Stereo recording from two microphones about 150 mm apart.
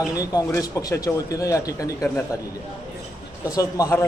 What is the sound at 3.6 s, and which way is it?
Speech, 20° left (ahead or behind).